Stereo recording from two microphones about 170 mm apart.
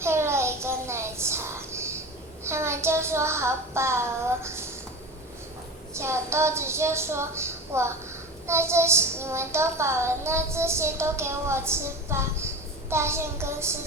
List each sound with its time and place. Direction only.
0.0 s a sound: 15° right (ahead or behind)
2.4 s a child's voice: 15° right (ahead or behind)
5.9 s child singing: 15° right (ahead or behind)